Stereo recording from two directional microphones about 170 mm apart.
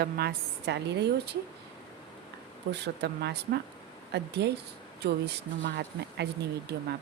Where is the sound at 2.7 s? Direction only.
80° right.